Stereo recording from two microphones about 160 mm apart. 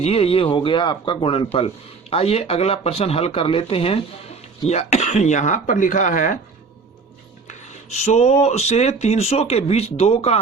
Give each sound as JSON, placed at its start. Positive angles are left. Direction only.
{"t": 0.0, "sound": "speech", "side_deg": 35}
{"t": 7.4, "sound": "speech", "side_deg": 45}